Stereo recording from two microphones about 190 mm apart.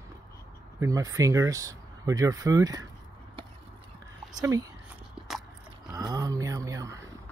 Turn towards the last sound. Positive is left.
turn(degrees=-15)  # may be behind; listen again after turning